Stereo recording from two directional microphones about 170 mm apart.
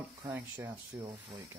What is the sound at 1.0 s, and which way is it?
Speech, 25° right (ahead or behind).